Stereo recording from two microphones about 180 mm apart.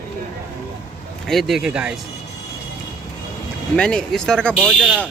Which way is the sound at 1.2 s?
Centre (ahead or behind).